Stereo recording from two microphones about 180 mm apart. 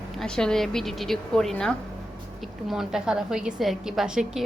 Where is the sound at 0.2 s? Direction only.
5° left (ahead or behind).